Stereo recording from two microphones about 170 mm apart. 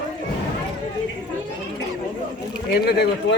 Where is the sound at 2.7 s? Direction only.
75° left (ahead or behind).